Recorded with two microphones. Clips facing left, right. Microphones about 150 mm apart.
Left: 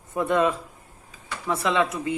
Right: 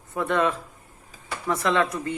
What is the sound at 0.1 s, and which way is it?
Speech, 15° left (ahead or behind).